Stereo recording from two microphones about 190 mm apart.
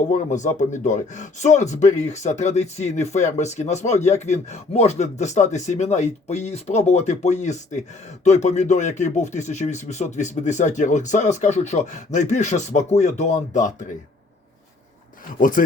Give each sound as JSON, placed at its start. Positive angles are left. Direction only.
{"t": 0.0, "sound": "speech", "side_deg": 40}
{"t": 15.4, "sound": "speech", "side_deg": 45}